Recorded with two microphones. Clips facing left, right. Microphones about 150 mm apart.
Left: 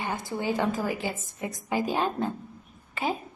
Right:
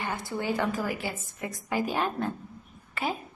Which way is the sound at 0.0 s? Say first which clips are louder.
Left 1 dB; 15° left (ahead or behind).